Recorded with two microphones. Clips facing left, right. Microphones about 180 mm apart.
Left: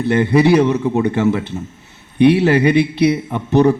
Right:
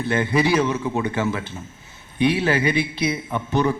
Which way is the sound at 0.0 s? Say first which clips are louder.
Left 7 dB; 65° left (ahead or behind).